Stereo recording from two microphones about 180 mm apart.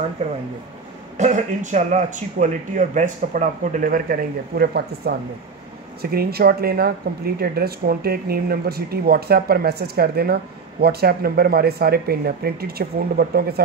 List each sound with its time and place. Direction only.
1.1 s speech: 45° right (ahead or behind); by 13.6 s 60° right (ahead or behind)